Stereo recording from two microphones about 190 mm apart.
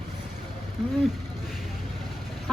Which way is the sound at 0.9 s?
Centre (ahead or behind).